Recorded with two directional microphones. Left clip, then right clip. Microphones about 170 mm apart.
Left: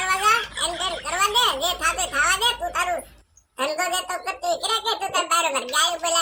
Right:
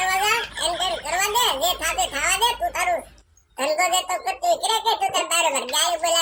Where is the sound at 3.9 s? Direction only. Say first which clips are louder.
Right 3 dB; 15° right (ahead or behind).